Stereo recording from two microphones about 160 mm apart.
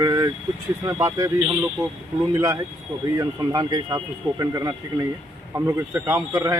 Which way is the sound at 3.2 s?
25° right (ahead or behind).